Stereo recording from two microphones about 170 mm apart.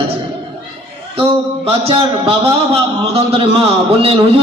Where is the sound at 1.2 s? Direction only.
35° right (ahead or behind).